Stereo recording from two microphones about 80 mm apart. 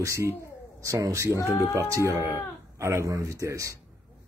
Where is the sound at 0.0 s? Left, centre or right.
Right.